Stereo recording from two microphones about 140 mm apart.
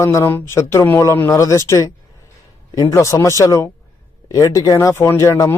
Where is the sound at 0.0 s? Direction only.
20° left (ahead or behind).